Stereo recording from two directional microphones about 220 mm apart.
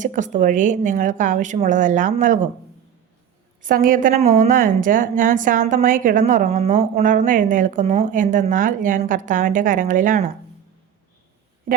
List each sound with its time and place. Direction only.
0.0 s a woman's voice: 35° right (ahead or behind)
3.6 s a woman's voice: 40° right (ahead or behind)